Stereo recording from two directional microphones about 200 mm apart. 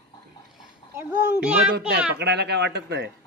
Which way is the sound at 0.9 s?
10° right (ahead or behind).